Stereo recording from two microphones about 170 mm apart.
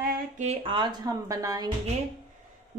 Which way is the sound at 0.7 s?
25° right (ahead or behind).